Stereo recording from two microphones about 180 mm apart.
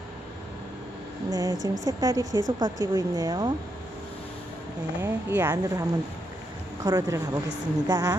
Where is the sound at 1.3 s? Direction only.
20° right (ahead or behind).